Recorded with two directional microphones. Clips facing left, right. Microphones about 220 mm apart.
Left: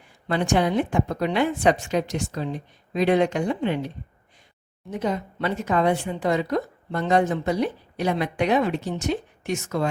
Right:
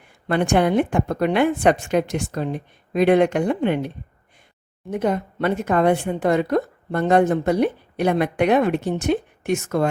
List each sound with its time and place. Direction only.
0.3 s speech: 55° right (ahead or behind)